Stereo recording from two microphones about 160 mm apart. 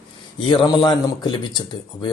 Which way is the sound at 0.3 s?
30° left (ahead or behind).